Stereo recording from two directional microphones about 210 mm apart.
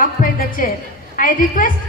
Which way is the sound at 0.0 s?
40° left (ahead or behind).